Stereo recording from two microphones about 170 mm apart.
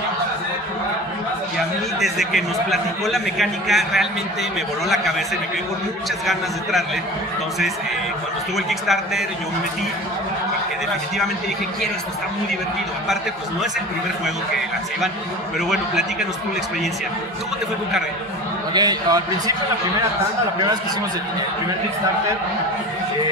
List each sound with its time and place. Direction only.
2.0 s a man's voice: centre (ahead or behind)
8.5 s a man's voice: centre (ahead or behind)
15.7 s a man's voice: 5° right (ahead or behind)
18.7 s a man's voice: 25° right (ahead or behind)